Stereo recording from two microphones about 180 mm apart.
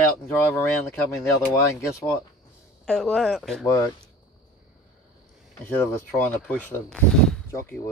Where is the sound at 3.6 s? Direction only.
15° left (ahead or behind).